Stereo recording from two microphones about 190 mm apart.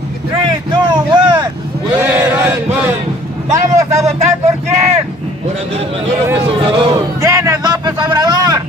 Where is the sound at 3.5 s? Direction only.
15° right (ahead or behind).